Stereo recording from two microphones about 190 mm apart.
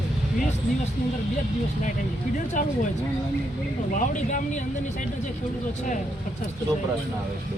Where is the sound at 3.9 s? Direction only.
40° left (ahead or behind).